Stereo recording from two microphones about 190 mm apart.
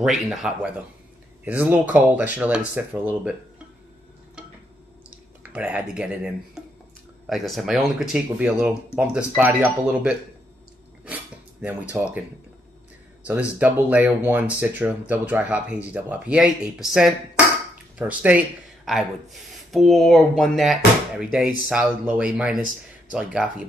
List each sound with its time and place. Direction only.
0.0 s speech: centre (ahead or behind)
5.4 s speech: 5° right (ahead or behind)
11.6 s speech: 10° right (ahead or behind)
13.2 s speech: 5° right (ahead or behind)